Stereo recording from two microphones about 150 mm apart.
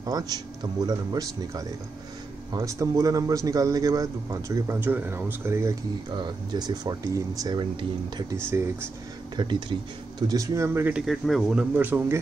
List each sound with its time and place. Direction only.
0.0 s a man's voice: 25° right (ahead or behind)
6.1 s a man's voice: 30° right (ahead or behind)
9.4 s speech: 30° right (ahead or behind); by 12.2 s 15° right (ahead or behind)